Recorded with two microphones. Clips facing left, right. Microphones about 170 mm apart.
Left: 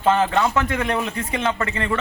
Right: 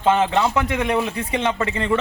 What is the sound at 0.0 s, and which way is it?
A man's voice, 15° right (ahead or behind).